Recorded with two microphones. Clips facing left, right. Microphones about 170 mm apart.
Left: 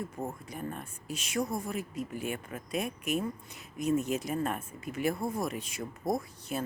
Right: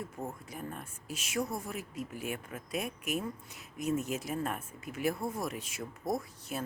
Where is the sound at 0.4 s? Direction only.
5° right (ahead or behind).